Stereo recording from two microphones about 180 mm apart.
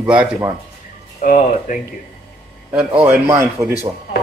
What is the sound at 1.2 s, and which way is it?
Speech, 50° left (ahead or behind).